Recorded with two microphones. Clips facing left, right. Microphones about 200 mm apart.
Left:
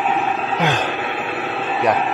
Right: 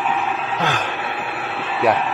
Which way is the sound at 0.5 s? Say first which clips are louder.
Left 3 dB; 15° left (ahead or behind).